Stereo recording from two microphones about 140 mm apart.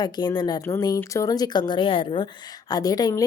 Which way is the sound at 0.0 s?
30° left (ahead or behind).